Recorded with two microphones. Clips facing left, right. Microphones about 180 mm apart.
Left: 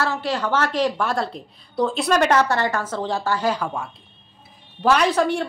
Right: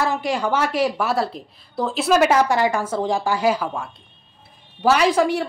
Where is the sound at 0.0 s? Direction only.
15° right (ahead or behind).